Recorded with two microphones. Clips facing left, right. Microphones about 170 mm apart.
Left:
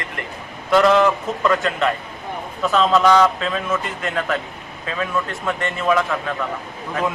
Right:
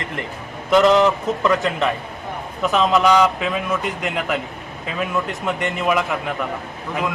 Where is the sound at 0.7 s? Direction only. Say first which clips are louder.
Right 1 dB; 20° right (ahead or behind).